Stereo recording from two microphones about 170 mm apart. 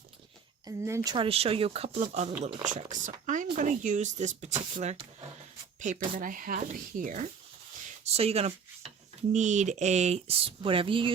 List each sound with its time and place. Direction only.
0.6 s speech: 15° right (ahead or behind)
1.1 s speech: 35° right (ahead or behind)
6.1 s speech: 50° right (ahead or behind)
8.0 s speech: 35° right (ahead or behind)